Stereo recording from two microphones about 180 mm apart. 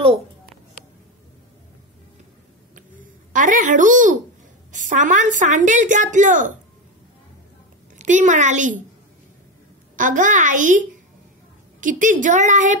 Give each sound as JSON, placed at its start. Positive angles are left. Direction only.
{"t": 2.7, "sound": "a sound", "side_deg": -45}
{"t": 4.7, "sound": "speech", "side_deg": -45}
{"t": 8.0, "sound": "speech", "side_deg": -45}
{"t": 9.9, "sound": "speech", "side_deg": -45}